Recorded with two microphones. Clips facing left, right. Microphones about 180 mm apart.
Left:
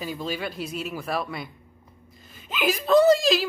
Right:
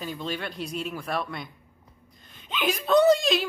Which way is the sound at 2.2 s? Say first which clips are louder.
Left 2 dB; 5° left (ahead or behind).